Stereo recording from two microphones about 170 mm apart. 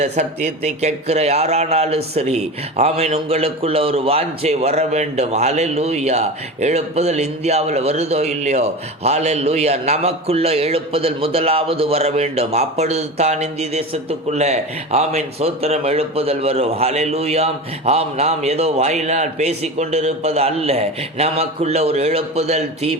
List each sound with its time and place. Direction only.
0.0 s a man's voice: 45° right (ahead or behind)